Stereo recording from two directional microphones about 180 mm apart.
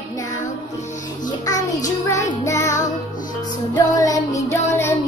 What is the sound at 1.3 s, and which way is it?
Music, 20° left (ahead or behind).